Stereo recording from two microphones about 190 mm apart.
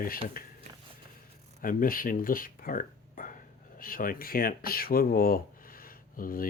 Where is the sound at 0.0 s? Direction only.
50° left (ahead or behind).